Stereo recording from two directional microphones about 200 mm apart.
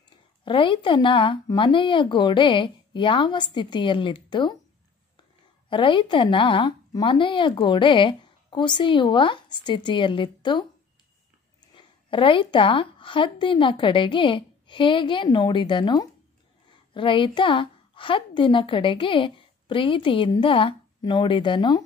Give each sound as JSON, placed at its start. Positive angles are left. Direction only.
{"t": 0.5, "sound": "a woman's voice", "side_deg": 25}
{"t": 5.7, "sound": "a woman's voice", "side_deg": 25}
{"t": 11.7, "sound": "a woman's voice", "side_deg": 25}